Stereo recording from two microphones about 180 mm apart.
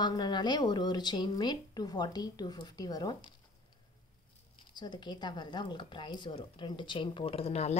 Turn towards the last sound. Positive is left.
turn(degrees=35)  # may be behind; listen again after turning